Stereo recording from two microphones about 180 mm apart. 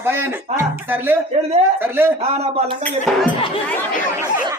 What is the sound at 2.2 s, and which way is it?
Speech, 35° right (ahead or behind).